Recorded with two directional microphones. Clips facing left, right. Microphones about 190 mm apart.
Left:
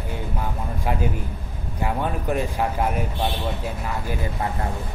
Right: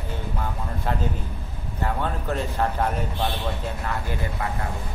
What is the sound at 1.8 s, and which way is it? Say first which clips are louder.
Speech: left 2 dB; 15° left (ahead or behind).